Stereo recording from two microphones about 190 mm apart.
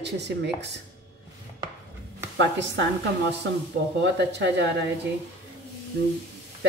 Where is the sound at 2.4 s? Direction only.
70° right (ahead or behind).